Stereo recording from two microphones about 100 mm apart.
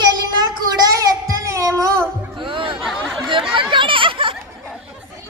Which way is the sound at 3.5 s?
55° right (ahead or behind).